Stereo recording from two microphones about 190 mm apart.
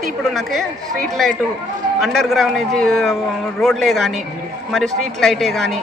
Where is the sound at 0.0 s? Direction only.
Centre (ahead or behind).